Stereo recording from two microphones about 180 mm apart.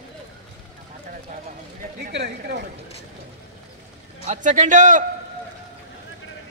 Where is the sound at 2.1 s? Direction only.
75° right (ahead or behind).